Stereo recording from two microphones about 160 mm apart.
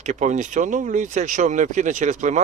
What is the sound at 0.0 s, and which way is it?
Speech, 50° right (ahead or behind).